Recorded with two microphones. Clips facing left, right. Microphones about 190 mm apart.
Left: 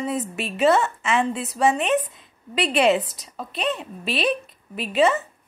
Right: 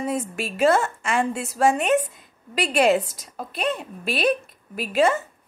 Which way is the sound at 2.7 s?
45° right (ahead or behind).